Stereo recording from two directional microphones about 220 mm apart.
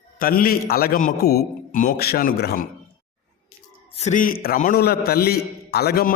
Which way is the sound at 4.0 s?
35° left (ahead or behind).